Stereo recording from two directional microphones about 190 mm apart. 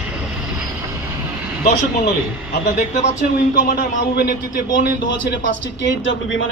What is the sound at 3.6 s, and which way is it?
Speech, 50° left (ahead or behind).